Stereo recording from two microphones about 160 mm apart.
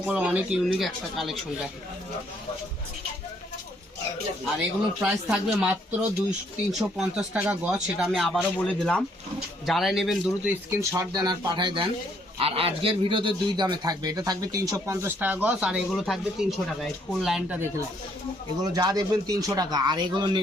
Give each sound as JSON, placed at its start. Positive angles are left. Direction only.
{"t": 0.0, "sound": "speech", "side_deg": -10}
{"t": 5.0, "sound": "speech", "side_deg": -5}
{"t": 10.7, "sound": "a man's voice", "side_deg": -20}
{"t": 18.6, "sound": "a man's voice", "side_deg": -25}